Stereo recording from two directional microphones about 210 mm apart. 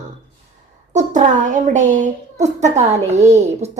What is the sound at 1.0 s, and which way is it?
A woman's voice, 35° right (ahead or behind).